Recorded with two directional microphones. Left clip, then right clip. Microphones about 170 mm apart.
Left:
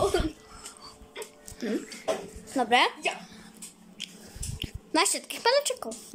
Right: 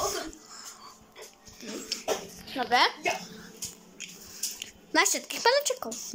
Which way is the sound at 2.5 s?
15° left (ahead or behind).